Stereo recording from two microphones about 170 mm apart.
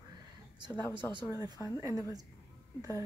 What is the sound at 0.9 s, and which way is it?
Speech, 25° right (ahead or behind).